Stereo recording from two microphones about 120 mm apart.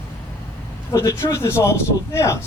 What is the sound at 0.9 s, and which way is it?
Speech, 25° left (ahead or behind).